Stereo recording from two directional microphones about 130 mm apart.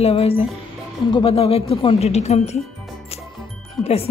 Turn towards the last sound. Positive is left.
turn(degrees=0)  # may be behind; listen again after turning